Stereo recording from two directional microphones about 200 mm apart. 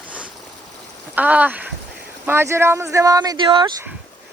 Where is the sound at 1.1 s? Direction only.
10° right (ahead or behind); by 3.7 s 25° right (ahead or behind).